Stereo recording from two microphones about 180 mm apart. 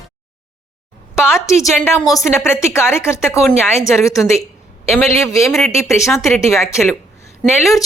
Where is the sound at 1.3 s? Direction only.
15° left (ahead or behind).